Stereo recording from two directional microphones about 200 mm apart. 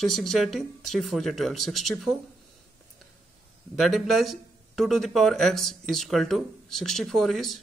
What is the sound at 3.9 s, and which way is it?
Speech, centre (ahead or behind).